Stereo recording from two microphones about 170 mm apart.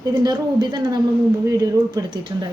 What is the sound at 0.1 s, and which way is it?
Speech, 25° right (ahead or behind).